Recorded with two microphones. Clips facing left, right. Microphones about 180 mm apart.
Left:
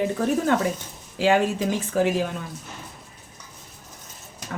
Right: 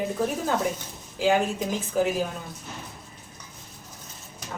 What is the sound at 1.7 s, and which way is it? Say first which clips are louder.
Speech: left 1 dB; 75° left (ahead or behind).